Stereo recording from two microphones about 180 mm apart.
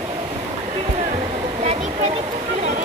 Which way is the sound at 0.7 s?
35° right (ahead or behind).